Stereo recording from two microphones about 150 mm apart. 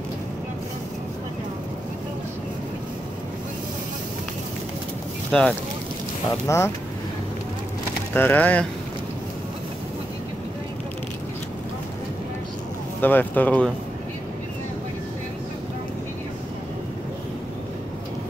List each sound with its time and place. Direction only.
5.3 s speech: 5° left (ahead or behind)
6.4 s speech: 20° left (ahead or behind)
8.1 s speech: 10° left (ahead or behind)
13.0 s speech: 10° left (ahead or behind)